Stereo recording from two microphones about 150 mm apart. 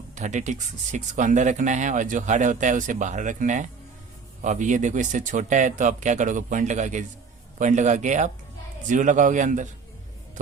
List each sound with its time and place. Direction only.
0.2 s speech: 55° right (ahead or behind)